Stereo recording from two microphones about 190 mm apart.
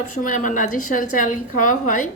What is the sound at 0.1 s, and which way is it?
A woman's voice, 45° left (ahead or behind).